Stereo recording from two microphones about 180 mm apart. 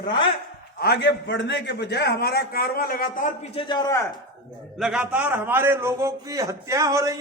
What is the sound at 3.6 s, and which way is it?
Speech, 25° left (ahead or behind).